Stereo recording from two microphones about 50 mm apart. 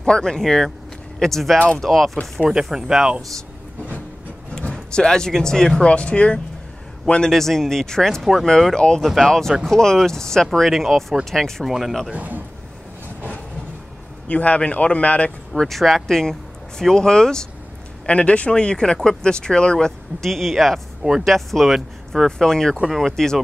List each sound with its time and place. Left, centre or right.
0.0 s speech: centre
2.7 s speech: centre
4.9 s speech: centre
5.9 s a man's voice: left
8.2 s speech: centre
8.7 s speech: centre
9.0 s speech: centre
9.7 s speech: centre
11.6 s speech: centre
12.1 s a man's voice: right
14.2 s a man's voice: left
15.6 s speech: centre
18.0 s a man's voice: left
20.2 s speech: centre